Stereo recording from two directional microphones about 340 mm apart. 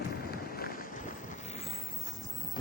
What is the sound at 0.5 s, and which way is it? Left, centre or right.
Run, left.